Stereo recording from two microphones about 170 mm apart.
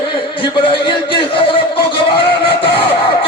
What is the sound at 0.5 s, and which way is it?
Speech, 30° left (ahead or behind).